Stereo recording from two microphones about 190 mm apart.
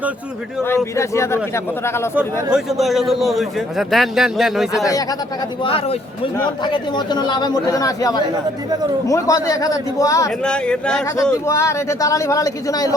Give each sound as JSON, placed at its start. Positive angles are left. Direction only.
{"t": 0.9, "sound": "speech", "side_deg": 15}
{"t": 2.1, "sound": "a man's voice", "side_deg": -5}
{"t": 5.6, "sound": "speech", "side_deg": 30}
{"t": 10.4, "sound": "a man's voice", "side_deg": 5}